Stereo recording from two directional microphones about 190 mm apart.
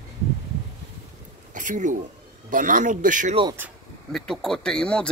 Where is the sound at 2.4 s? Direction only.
45° right (ahead or behind).